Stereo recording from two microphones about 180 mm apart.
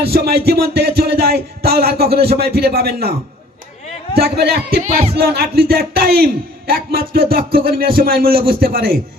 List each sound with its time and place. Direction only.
0.0 s a man's voice: 60° right (ahead or behind)
4.8 s speech: 45° right (ahead or behind)
5.1 s a man's voice: 60° right (ahead or behind)